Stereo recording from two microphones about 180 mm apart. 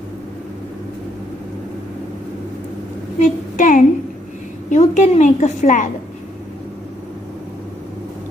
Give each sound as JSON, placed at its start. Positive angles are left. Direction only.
{"t": 3.2, "sound": "child singing", "side_deg": 45}
{"t": 4.6, "sound": "a woman's voice", "side_deg": 40}